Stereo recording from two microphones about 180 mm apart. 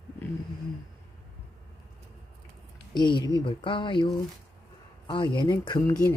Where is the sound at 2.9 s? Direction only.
25° left (ahead or behind).